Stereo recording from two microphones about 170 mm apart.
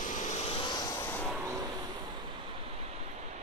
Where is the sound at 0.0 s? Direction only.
45° left (ahead or behind); by 1.1 s 25° left (ahead or behind).